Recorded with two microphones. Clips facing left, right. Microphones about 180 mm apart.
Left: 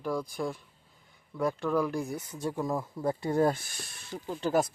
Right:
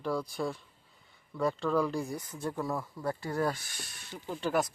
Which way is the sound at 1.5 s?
15° left (ahead or behind).